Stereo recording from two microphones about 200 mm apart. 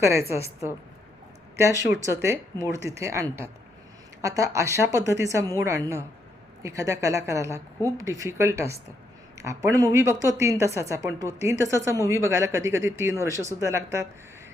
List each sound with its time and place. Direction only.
0.0 s a woman's voice: 15° right (ahead or behind)